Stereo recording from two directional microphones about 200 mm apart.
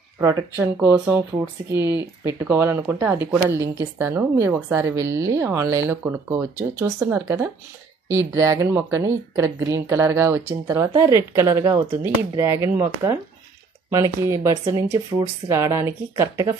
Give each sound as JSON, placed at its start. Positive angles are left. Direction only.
{"t": 0.2, "sound": "a woman's voice", "side_deg": -15}